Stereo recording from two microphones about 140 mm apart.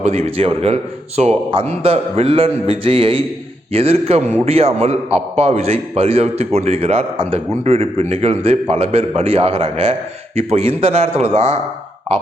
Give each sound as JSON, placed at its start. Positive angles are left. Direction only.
{"t": 0.0, "sound": "a man's voice", "side_deg": -50}